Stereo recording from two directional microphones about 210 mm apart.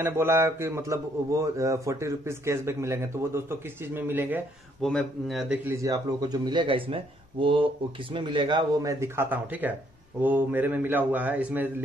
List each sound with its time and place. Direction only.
0.0 s a man's voice: 10° right (ahead or behind)
4.8 s speech: centre (ahead or behind)
5.8 s a man's voice: 20° right (ahead or behind)